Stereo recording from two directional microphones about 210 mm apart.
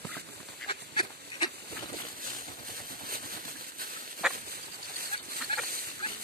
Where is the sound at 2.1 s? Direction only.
40° right (ahead or behind).